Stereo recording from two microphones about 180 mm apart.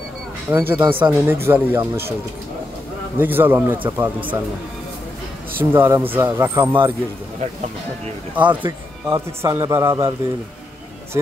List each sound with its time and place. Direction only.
0.5 s a man's voice: 15° right (ahead or behind)
3.2 s a man's voice: 10° right (ahead or behind)
5.6 s a man's voice: 15° right (ahead or behind)
8.7 s a man's voice: 20° right (ahead or behind)